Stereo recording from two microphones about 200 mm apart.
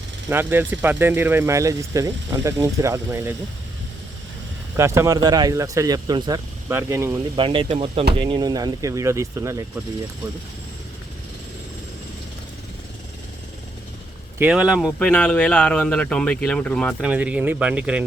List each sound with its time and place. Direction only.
0.3 s speech: 10° right (ahead or behind)
4.8 s speech: 15° right (ahead or behind)
7.3 s speech: 25° right (ahead or behind)
14.3 s speech: 5° right (ahead or behind)
17.0 s speech: 5° right (ahead or behind)